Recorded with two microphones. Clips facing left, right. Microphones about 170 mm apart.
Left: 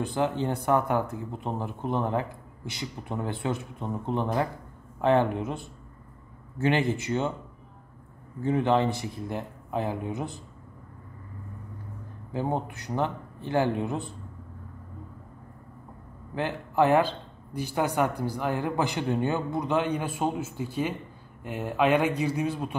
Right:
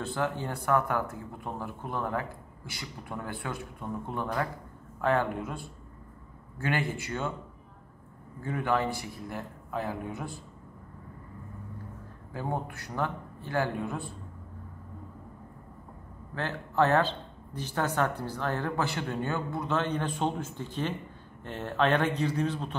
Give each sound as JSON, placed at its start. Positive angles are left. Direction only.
{"t": 0.0, "sound": "speech", "side_deg": 15}
{"t": 8.4, "sound": "speech", "side_deg": 25}
{"t": 12.3, "sound": "speech", "side_deg": 20}
{"t": 16.3, "sound": "speech", "side_deg": 15}